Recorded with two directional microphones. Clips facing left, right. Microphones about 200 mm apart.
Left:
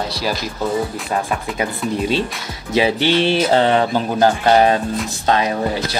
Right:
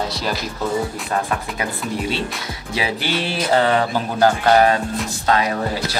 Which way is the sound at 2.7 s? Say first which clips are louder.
Left 7 dB; 25° left (ahead or behind).